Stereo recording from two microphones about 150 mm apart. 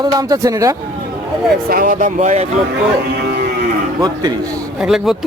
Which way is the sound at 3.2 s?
90° right.